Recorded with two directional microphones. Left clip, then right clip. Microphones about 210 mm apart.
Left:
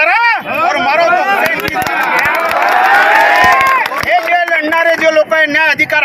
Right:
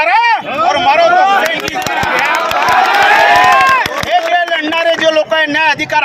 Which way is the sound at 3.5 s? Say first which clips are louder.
Right 1 dB; 45° right (ahead or behind).